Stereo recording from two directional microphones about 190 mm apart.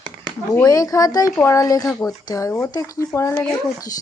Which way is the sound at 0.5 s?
20° left (ahead or behind).